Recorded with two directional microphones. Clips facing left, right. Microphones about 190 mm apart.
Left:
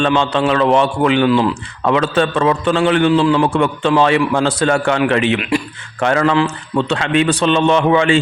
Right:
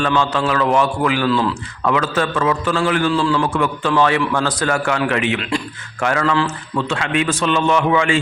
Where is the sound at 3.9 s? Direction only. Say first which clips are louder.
Left 3 dB; 20° left (ahead or behind).